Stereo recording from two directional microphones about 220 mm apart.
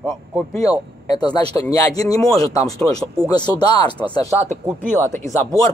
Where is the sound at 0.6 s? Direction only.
15° left (ahead or behind).